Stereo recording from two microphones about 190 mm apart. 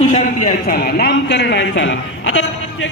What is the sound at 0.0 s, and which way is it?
Speech, 35° left (ahead or behind).